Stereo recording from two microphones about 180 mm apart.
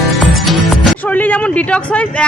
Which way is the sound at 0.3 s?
Centre (ahead or behind).